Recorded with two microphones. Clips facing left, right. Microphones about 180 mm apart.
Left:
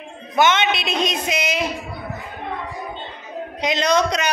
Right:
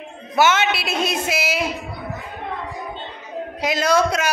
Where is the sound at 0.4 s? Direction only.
5° right (ahead or behind).